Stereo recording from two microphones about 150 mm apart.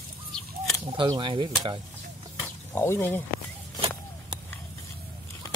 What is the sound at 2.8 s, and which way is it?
Speech, 15° left (ahead or behind).